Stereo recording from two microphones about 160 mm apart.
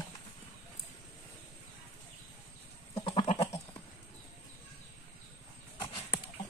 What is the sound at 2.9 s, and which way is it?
Goat, 35° left (ahead or behind).